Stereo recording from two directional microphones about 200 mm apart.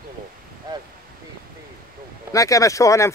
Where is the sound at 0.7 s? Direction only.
20° right (ahead or behind).